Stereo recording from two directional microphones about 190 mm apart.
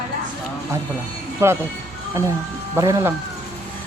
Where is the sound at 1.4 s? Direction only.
15° right (ahead or behind).